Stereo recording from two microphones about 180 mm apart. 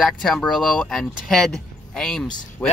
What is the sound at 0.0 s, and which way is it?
Speech, centre (ahead or behind).